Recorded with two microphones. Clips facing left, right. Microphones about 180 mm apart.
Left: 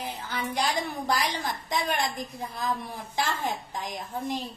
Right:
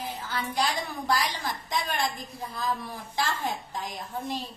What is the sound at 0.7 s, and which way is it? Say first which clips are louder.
Speech: left 2 dB; 60° left (ahead or behind).